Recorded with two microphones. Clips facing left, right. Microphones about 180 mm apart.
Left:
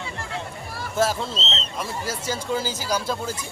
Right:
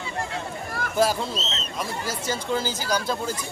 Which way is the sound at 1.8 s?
5° left (ahead or behind).